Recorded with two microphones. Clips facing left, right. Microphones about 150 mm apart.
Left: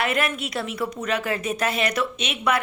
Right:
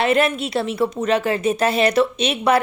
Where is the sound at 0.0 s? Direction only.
25° right (ahead or behind).